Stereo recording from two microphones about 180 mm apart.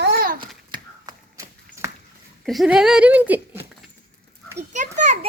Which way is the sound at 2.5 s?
Centre (ahead or behind).